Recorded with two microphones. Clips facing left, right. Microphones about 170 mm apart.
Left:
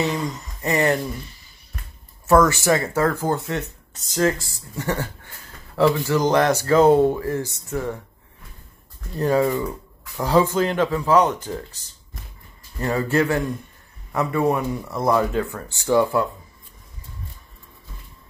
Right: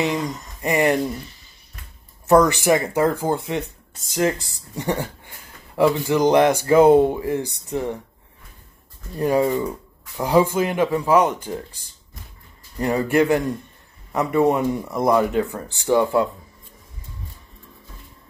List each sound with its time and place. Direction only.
0.0 s speech: 15° right (ahead or behind)
2.2 s speech: 15° right (ahead or behind)
9.2 s speech: 15° right (ahead or behind)
12.7 s speech: 15° right (ahead or behind)